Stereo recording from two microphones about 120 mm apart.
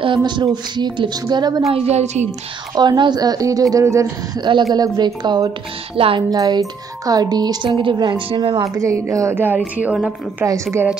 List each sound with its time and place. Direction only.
0.0 s speech: 40° right (ahead or behind)
1.7 s a woman's voice: 60° right (ahead or behind)
2.7 s a woman's voice: 35° right (ahead or behind)
4.4 s speech: 40° right (ahead or behind)
5.9 s speech: 50° right (ahead or behind)
6.3 s speech: 30° right (ahead or behind)
8.7 s a woman's voice: 25° right (ahead or behind)
10.4 s a woman's voice: 20° right (ahead or behind)